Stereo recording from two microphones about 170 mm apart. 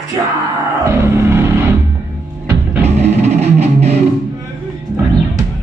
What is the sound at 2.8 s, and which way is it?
Music, 40° right (ahead or behind).